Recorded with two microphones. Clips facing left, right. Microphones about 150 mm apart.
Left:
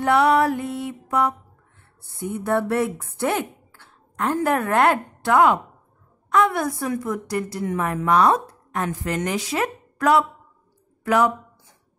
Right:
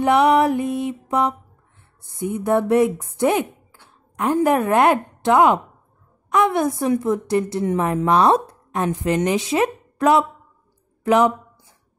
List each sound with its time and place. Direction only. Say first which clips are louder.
0.0 s a woman's voice: right 2 dB; 20° right (ahead or behind)